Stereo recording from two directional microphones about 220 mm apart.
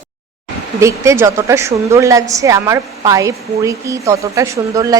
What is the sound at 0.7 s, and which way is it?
A woman's voice, 15° right (ahead or behind).